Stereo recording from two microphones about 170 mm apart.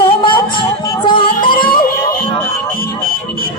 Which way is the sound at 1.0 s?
30° left (ahead or behind).